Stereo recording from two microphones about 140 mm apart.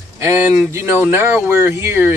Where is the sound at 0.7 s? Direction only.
15° right (ahead or behind).